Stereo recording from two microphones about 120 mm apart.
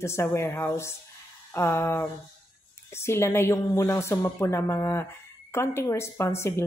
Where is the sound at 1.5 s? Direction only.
20° left (ahead or behind).